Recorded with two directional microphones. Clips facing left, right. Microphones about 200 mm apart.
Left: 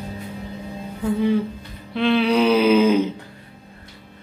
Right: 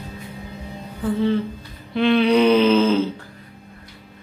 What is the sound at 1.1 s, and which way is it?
Speech, 10° left (ahead or behind).